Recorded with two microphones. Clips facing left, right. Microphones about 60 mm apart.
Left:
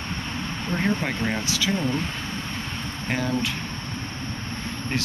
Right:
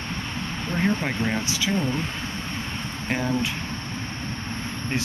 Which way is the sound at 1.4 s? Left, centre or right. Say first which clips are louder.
Left 1 dB; right.